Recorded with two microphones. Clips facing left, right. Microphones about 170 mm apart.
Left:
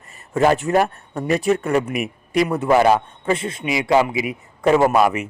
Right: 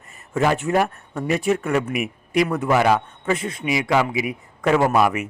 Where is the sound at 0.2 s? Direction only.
35° left (ahead or behind).